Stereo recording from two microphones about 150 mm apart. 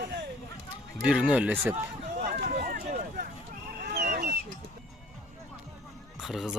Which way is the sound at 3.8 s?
75° right (ahead or behind).